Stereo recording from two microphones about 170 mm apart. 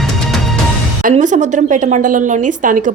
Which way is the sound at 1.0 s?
45° right (ahead or behind).